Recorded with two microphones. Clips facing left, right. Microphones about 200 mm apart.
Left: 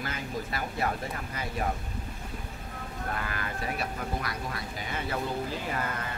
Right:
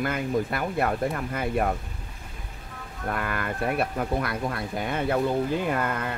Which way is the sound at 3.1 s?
60° right (ahead or behind).